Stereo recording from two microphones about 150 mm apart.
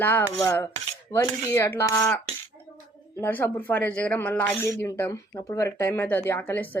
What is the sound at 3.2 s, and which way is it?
Speech, 15° left (ahead or behind).